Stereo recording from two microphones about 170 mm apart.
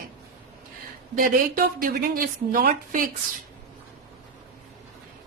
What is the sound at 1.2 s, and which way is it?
A woman's voice, 55° right (ahead or behind).